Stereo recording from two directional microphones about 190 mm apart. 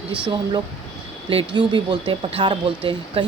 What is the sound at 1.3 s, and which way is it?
Speech, 25° right (ahead or behind).